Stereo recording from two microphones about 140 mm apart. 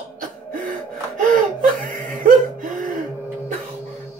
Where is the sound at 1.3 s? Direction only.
70° right (ahead or behind).